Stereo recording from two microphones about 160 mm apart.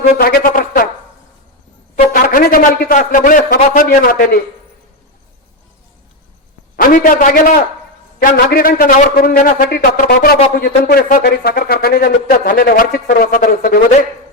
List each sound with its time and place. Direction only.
0.2 s a sound: 65° left (ahead or behind)
2.2 s a man's voice: 65° left (ahead or behind)
6.7 s a man's voice: 55° left (ahead or behind)